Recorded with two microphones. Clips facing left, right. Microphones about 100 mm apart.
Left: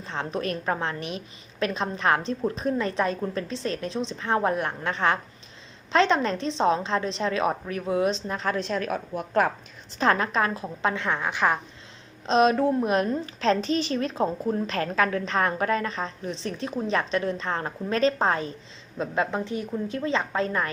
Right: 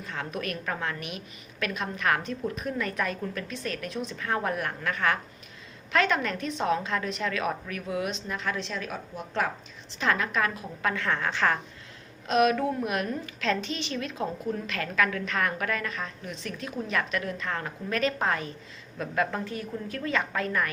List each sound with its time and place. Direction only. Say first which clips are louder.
0.0 s a woman's voice: left 4 dB; 30° left (ahead or behind); by 9.5 s 50° left (ahead or behind)
10.0 s a woman's voice: left 4 dB; 35° left (ahead or behind); by 11.6 s 15° left (ahead or behind)
12.2 s a woman's voice: left 3 dB; 30° left (ahead or behind)